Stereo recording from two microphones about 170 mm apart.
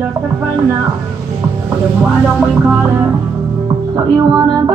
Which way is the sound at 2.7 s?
10° right (ahead or behind).